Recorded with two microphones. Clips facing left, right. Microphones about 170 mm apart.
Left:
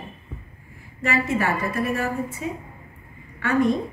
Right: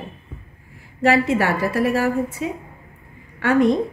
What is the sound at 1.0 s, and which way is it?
A woman's voice, 80° right.